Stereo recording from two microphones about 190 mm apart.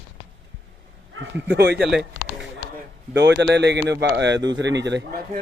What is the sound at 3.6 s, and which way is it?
Speech, 65° right (ahead or behind).